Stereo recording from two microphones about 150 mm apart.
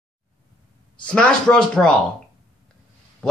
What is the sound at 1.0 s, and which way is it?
Speech, 5° left (ahead or behind).